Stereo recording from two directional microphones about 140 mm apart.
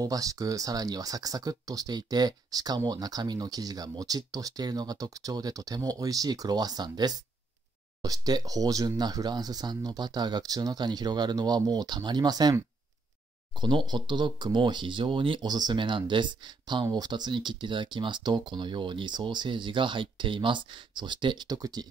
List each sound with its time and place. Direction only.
0.0 s speech: 25° right (ahead or behind)